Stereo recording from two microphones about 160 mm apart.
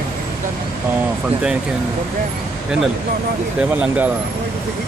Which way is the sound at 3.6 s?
10° right (ahead or behind).